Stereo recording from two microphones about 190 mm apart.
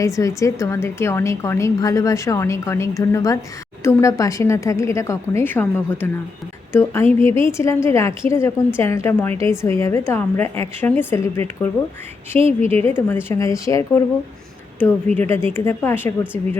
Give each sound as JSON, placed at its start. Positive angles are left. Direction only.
{"t": 0.0, "sound": "a woman's voice", "side_deg": 15}
{"t": 7.2, "sound": "a woman's voice", "side_deg": 15}
{"t": 12.8, "sound": "a woman's voice", "side_deg": 10}